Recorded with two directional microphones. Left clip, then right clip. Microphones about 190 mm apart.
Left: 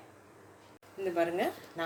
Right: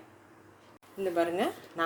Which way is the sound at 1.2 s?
30° right (ahead or behind).